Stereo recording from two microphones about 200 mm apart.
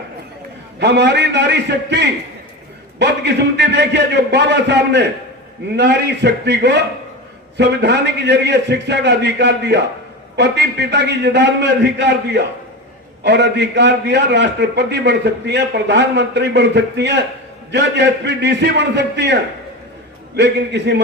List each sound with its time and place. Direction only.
0.8 s a man's voice: 60° right (ahead or behind)